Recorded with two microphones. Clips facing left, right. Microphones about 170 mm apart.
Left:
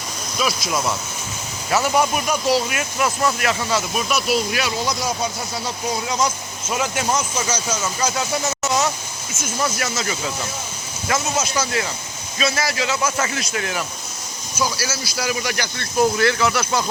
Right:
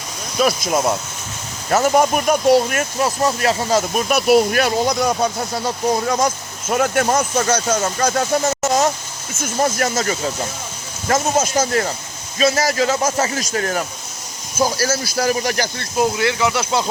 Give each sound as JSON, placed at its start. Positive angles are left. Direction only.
{"t": 0.3, "sound": "speech", "side_deg": -50}
{"t": 3.0, "sound": "speech", "side_deg": -35}
{"t": 16.0, "sound": "speech", "side_deg": -20}